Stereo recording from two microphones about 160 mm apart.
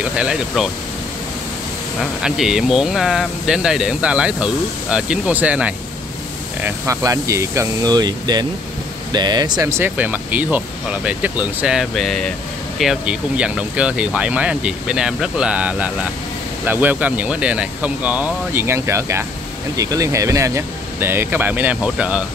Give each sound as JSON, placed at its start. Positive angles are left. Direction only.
{"t": 0.0, "sound": "speech", "side_deg": -5}
{"t": 2.0, "sound": "speech", "side_deg": -5}
{"t": 6.6, "sound": "speech", "side_deg": -20}